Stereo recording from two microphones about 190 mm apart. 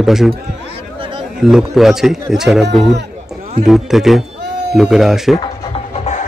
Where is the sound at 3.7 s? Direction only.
Centre (ahead or behind).